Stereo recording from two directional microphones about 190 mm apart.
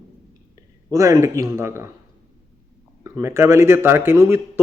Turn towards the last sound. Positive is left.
turn(degrees=-15)  # may be behind; listen again after turning